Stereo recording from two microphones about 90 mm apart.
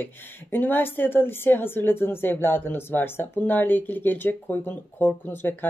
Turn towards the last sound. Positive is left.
turn(degrees=25)  # may be behind; listen again after turning